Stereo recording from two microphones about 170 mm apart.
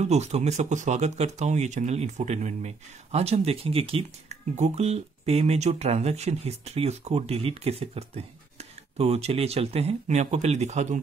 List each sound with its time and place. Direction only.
0.0 s speech: 40° right (ahead or behind)